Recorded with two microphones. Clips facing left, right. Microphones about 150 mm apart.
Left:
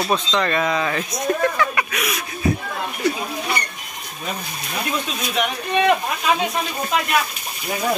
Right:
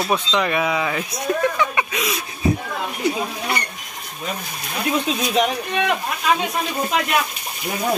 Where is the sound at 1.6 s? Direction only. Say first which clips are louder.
Even; 25° right (ahead or behind).